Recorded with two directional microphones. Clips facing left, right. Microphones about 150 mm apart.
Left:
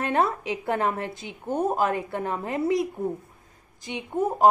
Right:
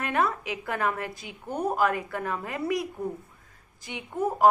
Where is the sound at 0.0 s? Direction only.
30° left (ahead or behind).